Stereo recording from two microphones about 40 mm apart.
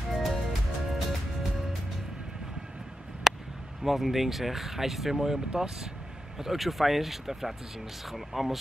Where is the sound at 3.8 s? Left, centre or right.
Centre.